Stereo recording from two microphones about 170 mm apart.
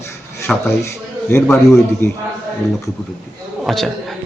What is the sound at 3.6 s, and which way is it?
Speech, centre (ahead or behind).